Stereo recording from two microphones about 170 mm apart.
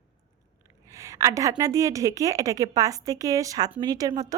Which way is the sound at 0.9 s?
20° right (ahead or behind).